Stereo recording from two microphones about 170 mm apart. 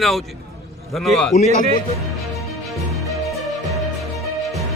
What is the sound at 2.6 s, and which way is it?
Music, centre (ahead or behind).